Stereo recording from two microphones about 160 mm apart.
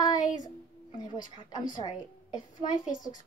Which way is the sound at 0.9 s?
30° left (ahead or behind).